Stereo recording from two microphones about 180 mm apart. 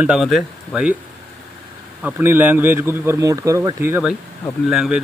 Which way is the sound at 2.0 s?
10° right (ahead or behind).